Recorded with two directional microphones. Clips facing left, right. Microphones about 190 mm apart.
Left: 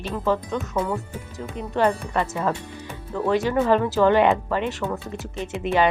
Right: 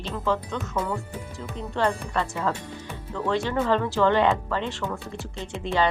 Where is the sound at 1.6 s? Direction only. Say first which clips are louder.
Left 4 dB; 15° left (ahead or behind).